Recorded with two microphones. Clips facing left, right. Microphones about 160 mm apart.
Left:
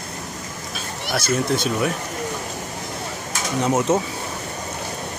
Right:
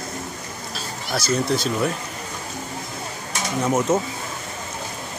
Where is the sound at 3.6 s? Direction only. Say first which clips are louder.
Left 1 dB; 20° left (ahead or behind).